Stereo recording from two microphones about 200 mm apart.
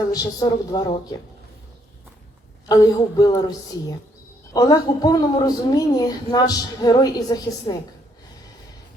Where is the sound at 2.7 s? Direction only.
20° left (ahead or behind).